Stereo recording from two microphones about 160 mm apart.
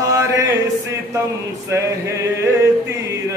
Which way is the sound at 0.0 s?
20° right (ahead or behind).